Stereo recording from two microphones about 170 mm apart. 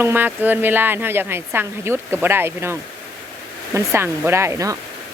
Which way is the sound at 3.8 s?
15° right (ahead or behind).